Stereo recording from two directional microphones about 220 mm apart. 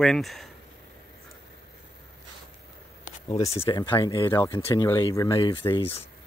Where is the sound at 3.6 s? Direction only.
20° left (ahead or behind).